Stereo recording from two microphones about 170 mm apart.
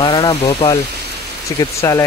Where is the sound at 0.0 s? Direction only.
25° left (ahead or behind).